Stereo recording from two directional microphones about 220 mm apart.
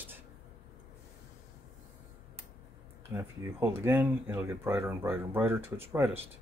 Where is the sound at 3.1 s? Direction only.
10° right (ahead or behind).